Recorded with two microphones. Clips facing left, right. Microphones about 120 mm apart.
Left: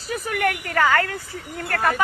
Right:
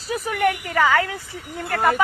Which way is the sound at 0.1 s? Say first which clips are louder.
Right 2 dB; 15° right (ahead or behind).